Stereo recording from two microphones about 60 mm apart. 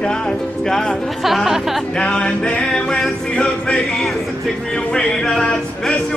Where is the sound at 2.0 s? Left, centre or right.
Centre.